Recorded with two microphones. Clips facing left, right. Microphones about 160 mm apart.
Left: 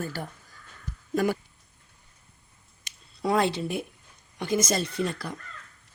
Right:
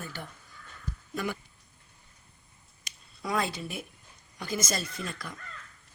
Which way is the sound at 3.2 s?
30° left (ahead or behind).